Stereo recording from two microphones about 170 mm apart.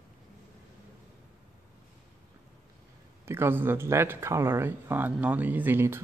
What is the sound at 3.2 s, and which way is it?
Speech, 15° right (ahead or behind).